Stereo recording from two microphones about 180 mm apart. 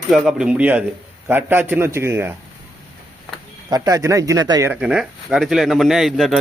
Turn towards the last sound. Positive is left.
turn(degrees=0)  # may be behind; listen again after turning